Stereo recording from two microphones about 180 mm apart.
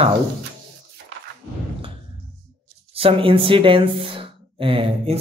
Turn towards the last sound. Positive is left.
turn(degrees=-30)  # may be behind; listen again after turning